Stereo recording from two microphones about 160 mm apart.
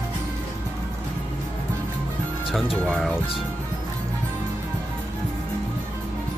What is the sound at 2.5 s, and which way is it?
Speech, centre (ahead or behind).